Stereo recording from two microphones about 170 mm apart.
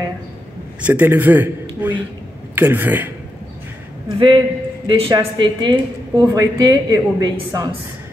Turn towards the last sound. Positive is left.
turn(degrees=-25)  # may be behind; listen again after turning